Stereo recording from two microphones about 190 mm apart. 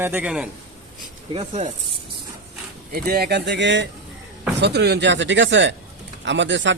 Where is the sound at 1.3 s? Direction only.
35° right (ahead or behind).